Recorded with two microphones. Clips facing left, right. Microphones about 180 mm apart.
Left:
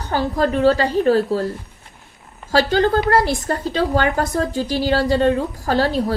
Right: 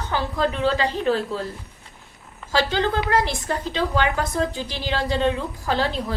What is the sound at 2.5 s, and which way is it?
A woman's voice, 45° left (ahead or behind).